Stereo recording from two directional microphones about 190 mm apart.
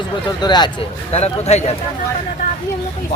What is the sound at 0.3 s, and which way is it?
Speech, 25° left (ahead or behind).